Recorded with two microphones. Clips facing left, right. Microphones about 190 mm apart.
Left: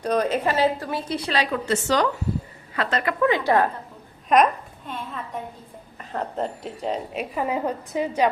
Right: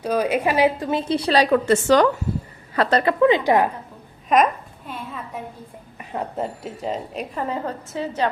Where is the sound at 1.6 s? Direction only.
50° right (ahead or behind).